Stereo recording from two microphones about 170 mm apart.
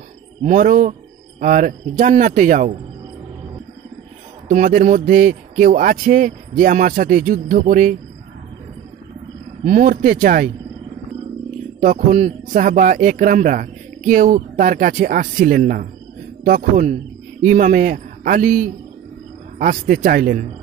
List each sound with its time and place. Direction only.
0.4 s speech: 45° right (ahead or behind)
4.5 s speech: 50° right (ahead or behind)
9.6 s speech: 50° right (ahead or behind)
11.8 s a man's voice: 45° right (ahead or behind)